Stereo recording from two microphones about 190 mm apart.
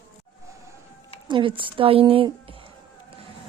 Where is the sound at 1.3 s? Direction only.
25° right (ahead or behind).